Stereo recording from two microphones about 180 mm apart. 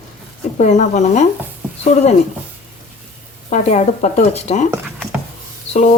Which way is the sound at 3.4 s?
45° left (ahead or behind).